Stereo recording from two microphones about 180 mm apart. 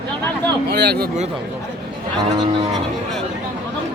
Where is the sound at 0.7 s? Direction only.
65° right (ahead or behind).